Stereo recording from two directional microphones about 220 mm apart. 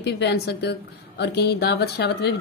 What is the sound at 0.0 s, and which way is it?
Speech, 50° left (ahead or behind).